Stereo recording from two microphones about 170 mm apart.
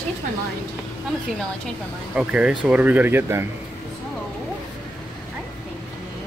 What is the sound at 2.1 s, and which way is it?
Speech, 5° right (ahead or behind).